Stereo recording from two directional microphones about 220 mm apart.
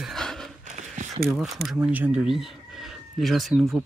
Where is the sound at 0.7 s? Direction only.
35° right (ahead or behind).